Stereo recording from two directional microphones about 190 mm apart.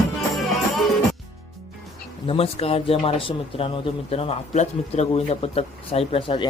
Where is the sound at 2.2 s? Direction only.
30° left (ahead or behind).